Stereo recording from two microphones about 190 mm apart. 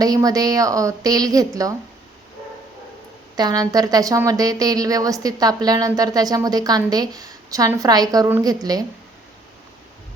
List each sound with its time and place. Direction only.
0.0 s a woman's voice: 20° right (ahead or behind)
3.3 s a woman's voice: 20° right (ahead or behind)